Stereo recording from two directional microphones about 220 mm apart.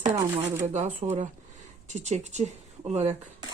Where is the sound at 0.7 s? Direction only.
35° right (ahead or behind).